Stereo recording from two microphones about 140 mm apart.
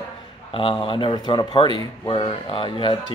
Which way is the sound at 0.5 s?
40° left (ahead or behind).